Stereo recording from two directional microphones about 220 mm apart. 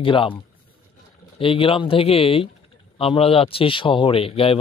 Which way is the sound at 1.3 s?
25° left (ahead or behind).